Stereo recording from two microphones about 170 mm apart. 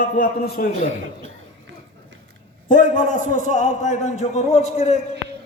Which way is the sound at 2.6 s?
50° left (ahead or behind).